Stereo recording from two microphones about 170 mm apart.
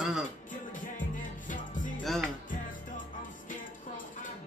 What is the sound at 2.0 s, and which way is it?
Music, centre (ahead or behind).